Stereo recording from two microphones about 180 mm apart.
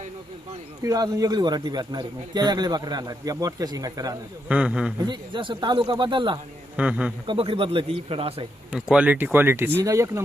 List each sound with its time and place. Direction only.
0.8 s a man's voice: 20° right (ahead or behind)
4.4 s a man's voice: 5° right (ahead or behind)
5.0 s a man's voice: 25° right (ahead or behind)
6.7 s speech: 5° right (ahead or behind)
7.3 s a man's voice: 30° right (ahead or behind)
8.7 s speech: 5° right (ahead or behind)